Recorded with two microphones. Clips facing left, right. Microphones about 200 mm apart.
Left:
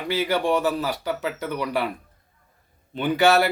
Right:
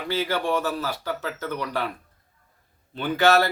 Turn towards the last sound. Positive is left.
turn(degrees=15)  # may be behind; listen again after turning